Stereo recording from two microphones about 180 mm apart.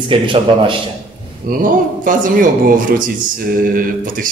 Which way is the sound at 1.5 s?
50° right (ahead or behind).